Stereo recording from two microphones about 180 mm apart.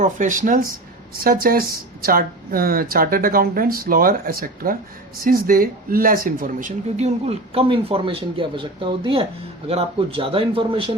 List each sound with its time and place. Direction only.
0.0 s a man's voice: 45° right (ahead or behind); by 10.9 s 30° right (ahead or behind)